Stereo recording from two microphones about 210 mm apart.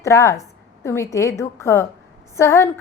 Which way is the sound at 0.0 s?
15° left (ahead or behind).